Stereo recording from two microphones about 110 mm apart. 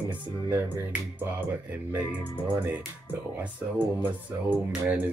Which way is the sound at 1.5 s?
15° right (ahead or behind).